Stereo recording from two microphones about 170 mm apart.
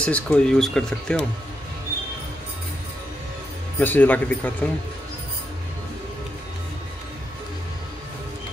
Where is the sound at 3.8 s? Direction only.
10° left (ahead or behind).